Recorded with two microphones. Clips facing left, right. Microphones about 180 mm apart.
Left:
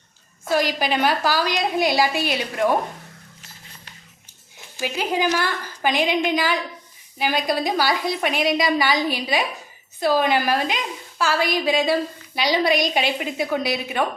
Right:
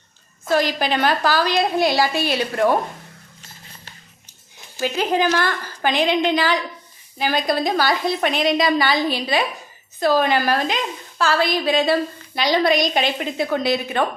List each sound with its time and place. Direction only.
0.4 s a woman's voice: 10° left (ahead or behind)
4.8 s a woman's voice: 15° left (ahead or behind)